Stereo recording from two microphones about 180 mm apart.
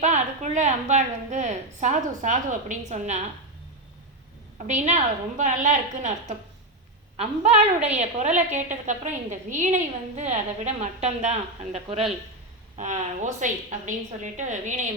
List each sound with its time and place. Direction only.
0.0 s a woman's voice: 40° right (ahead or behind)
4.5 s a woman's voice: 40° right (ahead or behind)